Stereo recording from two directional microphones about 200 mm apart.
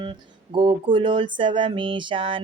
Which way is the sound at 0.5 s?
25° right (ahead or behind).